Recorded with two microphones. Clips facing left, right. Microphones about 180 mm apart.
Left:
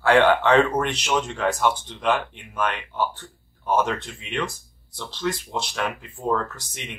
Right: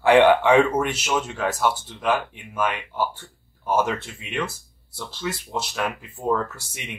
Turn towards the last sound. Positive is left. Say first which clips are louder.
# right 1 dB
turn(degrees=-10)  # may be behind; listen again after turning